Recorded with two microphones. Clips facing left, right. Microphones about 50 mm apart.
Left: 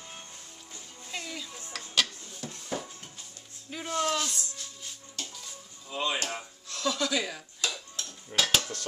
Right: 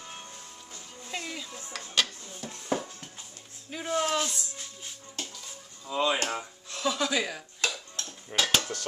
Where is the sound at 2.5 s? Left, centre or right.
Centre.